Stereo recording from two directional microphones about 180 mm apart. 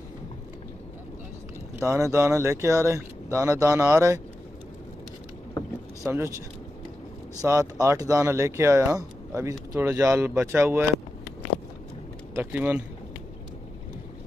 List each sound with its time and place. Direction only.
1.8 s speech: 15° right (ahead or behind)
6.0 s speech: 15° right (ahead or behind)
7.4 s speech: 10° right (ahead or behind)
12.4 s speech: 10° right (ahead or behind)